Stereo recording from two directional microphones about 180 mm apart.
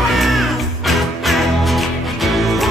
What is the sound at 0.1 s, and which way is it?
Music, centre (ahead or behind).